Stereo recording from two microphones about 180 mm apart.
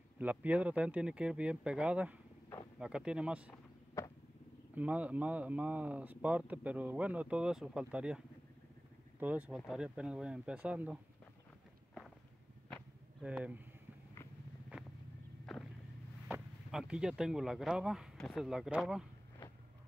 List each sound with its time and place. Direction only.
0.2 s speech: 10° right (ahead or behind)
4.0 s vehicle: 15° left (ahead or behind)
4.7 s speech: 10° right (ahead or behind)
9.2 s speech: 10° right (ahead or behind)
12.6 s a sound: centre (ahead or behind)
15.5 s vehicle: centre (ahead or behind)
16.3 s speech: 5° right (ahead or behind)